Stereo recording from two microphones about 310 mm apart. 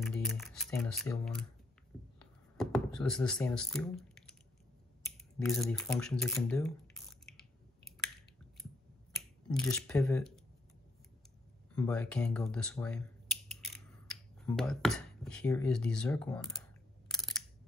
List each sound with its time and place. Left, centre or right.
0.0 s a sound: centre
2.5 s drip: centre
5.4 s speech: centre
9.5 s speech: centre
11.7 s speech: centre
17.1 s a sound: centre